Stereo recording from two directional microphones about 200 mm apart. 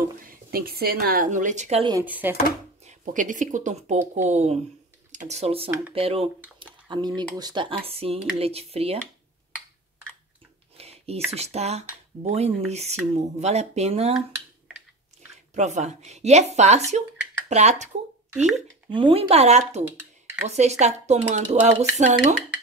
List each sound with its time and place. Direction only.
0.2 s speech: 45° right (ahead or behind)
2.0 s speech: 10° right (ahead or behind)
2.8 s a woman's voice: 40° right (ahead or behind)
6.6 s a sound: 20° right (ahead or behind)
7.2 s speech: 20° right (ahead or behind)
10.8 s a sound: 30° right (ahead or behind)
11.3 s a woman's voice: 30° right (ahead or behind)
15.5 s a woman's voice: 35° right (ahead or behind)
18.3 s speech: 5° right (ahead or behind)
18.9 s a woman's voice: 25° right (ahead or behind)